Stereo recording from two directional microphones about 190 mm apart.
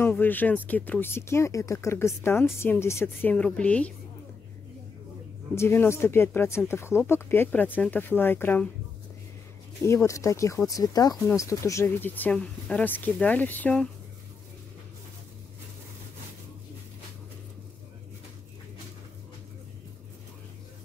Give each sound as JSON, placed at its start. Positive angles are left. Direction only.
{"t": 0.0, "sound": "speech", "side_deg": 10}
{"t": 5.6, "sound": "speech", "side_deg": 15}
{"t": 9.8, "sound": "speech", "side_deg": 15}